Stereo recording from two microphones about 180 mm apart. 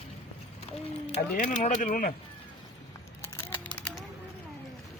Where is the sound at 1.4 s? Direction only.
45° left (ahead or behind).